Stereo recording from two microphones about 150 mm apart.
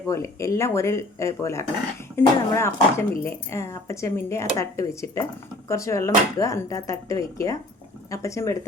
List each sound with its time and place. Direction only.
0.1 s speech: 20° left (ahead or behind)